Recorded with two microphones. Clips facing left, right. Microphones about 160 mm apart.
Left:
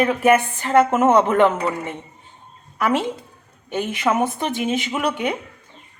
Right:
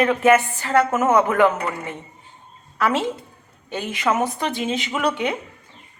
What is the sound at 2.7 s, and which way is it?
A woman's voice, 15° left (ahead or behind).